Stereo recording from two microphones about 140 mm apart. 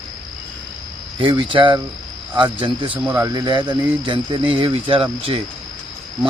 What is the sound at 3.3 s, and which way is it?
Speech, 30° right (ahead or behind).